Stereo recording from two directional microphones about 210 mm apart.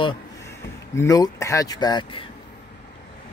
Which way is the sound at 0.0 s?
15° left (ahead or behind).